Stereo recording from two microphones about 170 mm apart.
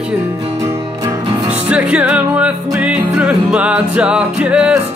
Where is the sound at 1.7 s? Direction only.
5° right (ahead or behind).